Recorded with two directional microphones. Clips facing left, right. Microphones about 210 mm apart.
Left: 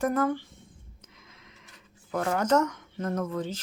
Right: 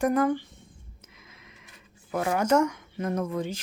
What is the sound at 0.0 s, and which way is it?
Speech, 15° right (ahead or behind).